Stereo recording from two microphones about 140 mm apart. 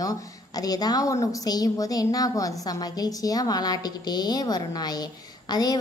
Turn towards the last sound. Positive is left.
turn(degrees=30)  # may be behind; listen again after turning